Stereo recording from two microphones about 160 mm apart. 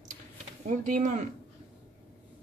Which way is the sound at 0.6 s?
55° right (ahead or behind).